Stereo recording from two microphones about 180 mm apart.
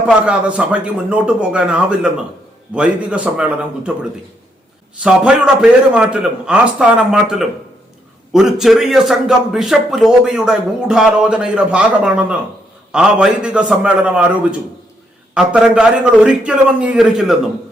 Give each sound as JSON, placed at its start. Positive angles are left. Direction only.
{"t": 0.0, "sound": "a man's voice", "side_deg": -5}
{"t": 4.9, "sound": "a man's voice", "side_deg": -5}